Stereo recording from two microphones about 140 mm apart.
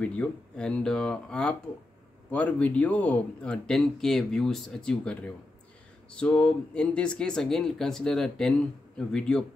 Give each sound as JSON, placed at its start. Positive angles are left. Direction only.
{"t": 0.0, "sound": "speech", "side_deg": 10}